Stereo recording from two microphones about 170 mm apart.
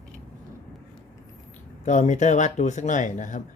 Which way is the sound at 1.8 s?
45° left (ahead or behind).